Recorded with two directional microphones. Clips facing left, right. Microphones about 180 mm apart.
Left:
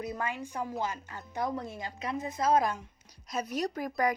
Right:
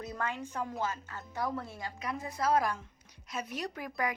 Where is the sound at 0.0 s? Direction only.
10° left (ahead or behind).